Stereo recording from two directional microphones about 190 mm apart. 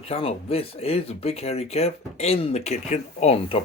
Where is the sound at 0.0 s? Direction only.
30° left (ahead or behind).